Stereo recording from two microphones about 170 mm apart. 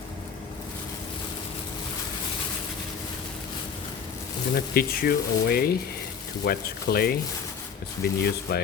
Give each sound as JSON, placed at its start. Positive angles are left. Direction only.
{"t": 4.5, "sound": "speech", "side_deg": 65}